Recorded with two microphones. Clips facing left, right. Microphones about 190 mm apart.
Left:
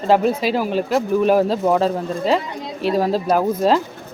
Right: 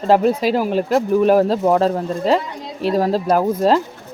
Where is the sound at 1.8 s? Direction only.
40° right (ahead or behind).